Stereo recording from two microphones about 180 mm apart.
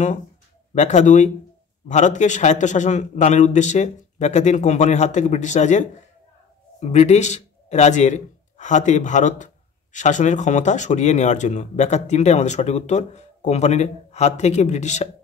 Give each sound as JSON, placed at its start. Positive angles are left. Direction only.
{"t": 0.7, "sound": "speech", "side_deg": 40}